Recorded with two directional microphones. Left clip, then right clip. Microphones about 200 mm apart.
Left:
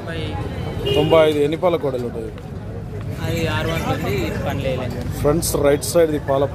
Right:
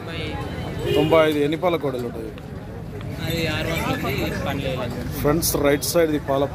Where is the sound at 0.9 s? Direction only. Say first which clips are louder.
Left 3 dB; 5° left (ahead or behind).